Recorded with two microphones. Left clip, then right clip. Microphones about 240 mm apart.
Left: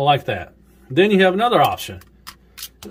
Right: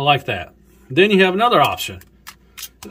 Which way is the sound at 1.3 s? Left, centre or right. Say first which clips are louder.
Right 1 dB; centre.